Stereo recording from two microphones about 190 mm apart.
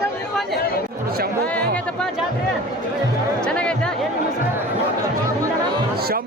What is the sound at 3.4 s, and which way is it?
Music, 5° left (ahead or behind).